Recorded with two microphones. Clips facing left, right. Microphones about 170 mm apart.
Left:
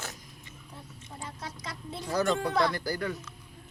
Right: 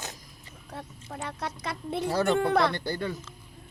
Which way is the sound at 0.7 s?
75° right (ahead or behind).